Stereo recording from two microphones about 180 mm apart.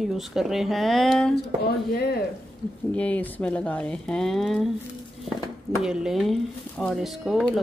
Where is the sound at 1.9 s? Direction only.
60° left (ahead or behind).